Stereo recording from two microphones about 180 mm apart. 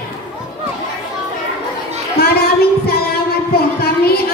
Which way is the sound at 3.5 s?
60° left (ahead or behind).